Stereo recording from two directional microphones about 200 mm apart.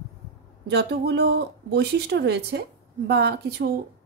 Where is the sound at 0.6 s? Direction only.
55° right (ahead or behind).